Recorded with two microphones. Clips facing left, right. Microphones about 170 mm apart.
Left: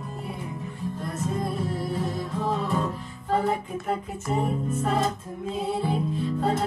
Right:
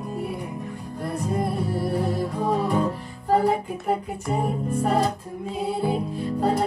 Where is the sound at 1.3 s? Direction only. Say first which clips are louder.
Right 5 dB; 65° right (ahead or behind).